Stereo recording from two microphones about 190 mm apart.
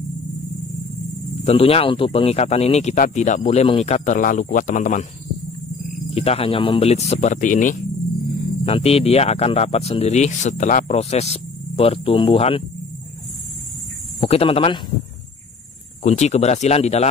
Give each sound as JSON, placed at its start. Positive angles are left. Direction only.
{"t": 1.4, "sound": "speech", "side_deg": 30}
{"t": 6.1, "sound": "speech", "side_deg": 30}
{"t": 8.6, "sound": "speech", "side_deg": 30}
{"t": 14.2, "sound": "speech", "side_deg": 30}
{"t": 16.0, "sound": "speech", "side_deg": 35}